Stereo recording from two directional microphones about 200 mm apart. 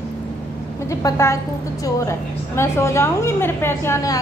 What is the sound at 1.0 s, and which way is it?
A woman's voice, 15° left (ahead or behind).